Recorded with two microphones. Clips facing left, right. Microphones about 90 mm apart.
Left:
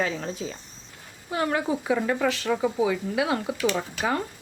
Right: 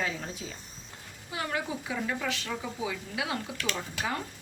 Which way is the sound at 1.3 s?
50° left (ahead or behind).